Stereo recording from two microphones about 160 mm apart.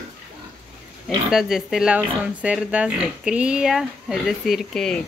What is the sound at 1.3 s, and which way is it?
Speech, centre (ahead or behind).